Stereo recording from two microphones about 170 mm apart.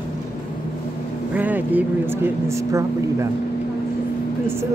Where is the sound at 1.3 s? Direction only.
10° right (ahead or behind).